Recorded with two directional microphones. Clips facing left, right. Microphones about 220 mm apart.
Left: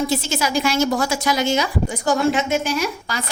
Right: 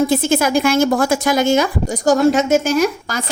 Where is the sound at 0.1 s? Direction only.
55° right (ahead or behind).